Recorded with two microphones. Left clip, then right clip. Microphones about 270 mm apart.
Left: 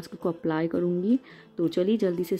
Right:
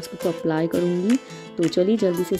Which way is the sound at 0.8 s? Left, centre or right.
Right.